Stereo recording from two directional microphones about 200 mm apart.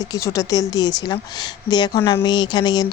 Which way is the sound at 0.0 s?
15° left (ahead or behind).